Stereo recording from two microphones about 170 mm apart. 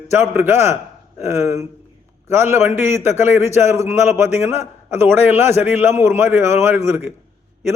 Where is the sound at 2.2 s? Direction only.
15° right (ahead or behind).